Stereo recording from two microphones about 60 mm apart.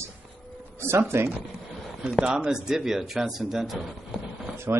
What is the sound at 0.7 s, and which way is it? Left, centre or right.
Speech, right.